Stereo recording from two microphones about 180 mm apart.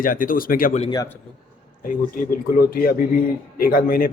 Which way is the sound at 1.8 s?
50° left (ahead or behind).